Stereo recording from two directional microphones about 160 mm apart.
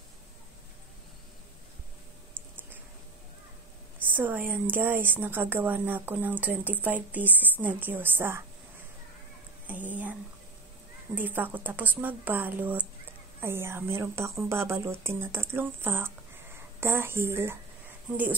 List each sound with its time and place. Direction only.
4.1 s a woman's voice: 10° right (ahead or behind)
9.7 s a sound: 10° right (ahead or behind)
11.1 s a woman's voice: 10° right (ahead or behind)